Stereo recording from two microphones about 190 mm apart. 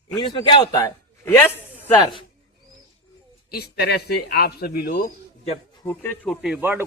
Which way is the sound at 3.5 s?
55° left (ahead or behind).